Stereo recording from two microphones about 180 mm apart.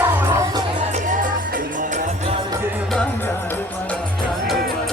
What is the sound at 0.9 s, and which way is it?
Music, 45° right (ahead or behind).